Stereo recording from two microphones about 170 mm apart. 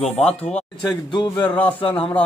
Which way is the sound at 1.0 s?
25° left (ahead or behind).